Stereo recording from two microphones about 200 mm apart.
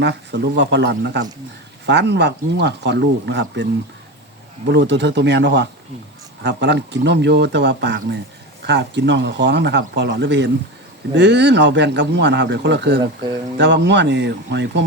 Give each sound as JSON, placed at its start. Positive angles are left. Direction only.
{"t": 0.0, "sound": "speech", "side_deg": -55}